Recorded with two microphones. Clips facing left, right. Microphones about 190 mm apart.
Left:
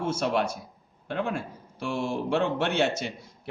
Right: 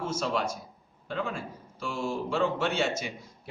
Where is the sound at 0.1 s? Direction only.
65° left (ahead or behind).